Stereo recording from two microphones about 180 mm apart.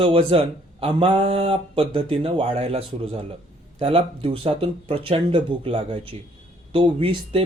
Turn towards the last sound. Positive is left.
turn(degrees=-30)  # may be behind; listen again after turning